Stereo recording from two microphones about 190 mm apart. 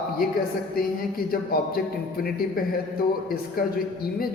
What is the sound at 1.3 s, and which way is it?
Speech, 50° left (ahead or behind).